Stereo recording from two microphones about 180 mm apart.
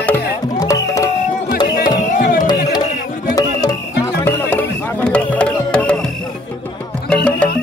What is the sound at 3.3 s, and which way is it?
Music, 20° left (ahead or behind).